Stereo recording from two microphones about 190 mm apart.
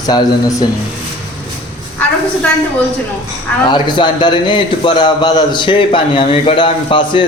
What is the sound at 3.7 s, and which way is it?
A man's voice, 25° left (ahead or behind).